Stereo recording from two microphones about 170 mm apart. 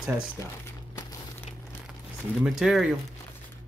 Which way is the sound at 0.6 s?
20° left (ahead or behind).